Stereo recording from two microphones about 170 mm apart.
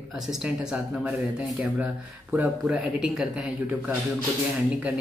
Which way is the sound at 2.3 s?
5° right (ahead or behind).